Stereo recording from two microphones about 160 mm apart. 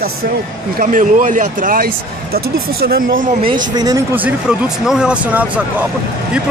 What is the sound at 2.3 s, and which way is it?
Speech, 70° right (ahead or behind).